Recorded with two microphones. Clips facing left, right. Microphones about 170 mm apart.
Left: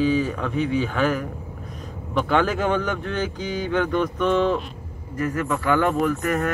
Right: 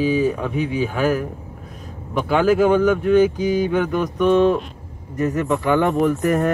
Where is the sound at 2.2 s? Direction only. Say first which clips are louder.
Right 7 dB; 10° right (ahead or behind).